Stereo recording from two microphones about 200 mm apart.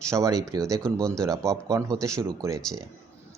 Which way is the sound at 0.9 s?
5° left (ahead or behind).